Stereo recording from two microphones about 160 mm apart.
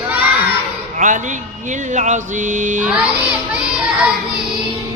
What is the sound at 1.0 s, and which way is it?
Speech, 50° right (ahead or behind).